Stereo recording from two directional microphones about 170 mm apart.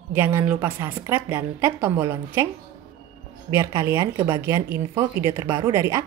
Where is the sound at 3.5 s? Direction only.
15° right (ahead or behind).